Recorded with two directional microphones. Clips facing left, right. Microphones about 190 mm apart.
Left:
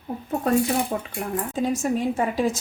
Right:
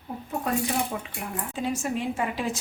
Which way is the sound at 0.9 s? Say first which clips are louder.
Left 6 dB; 50° left (ahead or behind).